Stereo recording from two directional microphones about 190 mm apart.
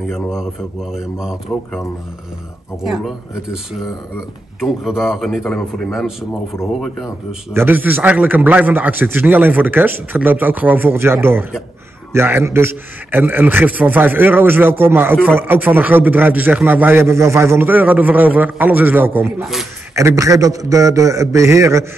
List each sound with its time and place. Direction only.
0.1 s a man's voice: centre (ahead or behind)
1.5 s a man's voice: 5° left (ahead or behind)
2.8 s a man's voice: centre (ahead or behind)
4.6 s a man's voice: centre (ahead or behind)
7.5 s a man's voice: 10° right (ahead or behind)